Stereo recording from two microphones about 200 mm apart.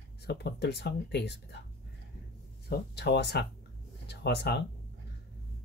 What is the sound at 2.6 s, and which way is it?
Speech, 55° left (ahead or behind).